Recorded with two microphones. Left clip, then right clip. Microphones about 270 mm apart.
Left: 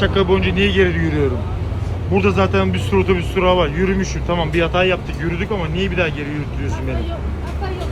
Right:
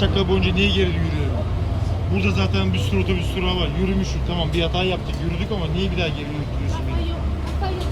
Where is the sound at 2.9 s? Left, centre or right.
Centre.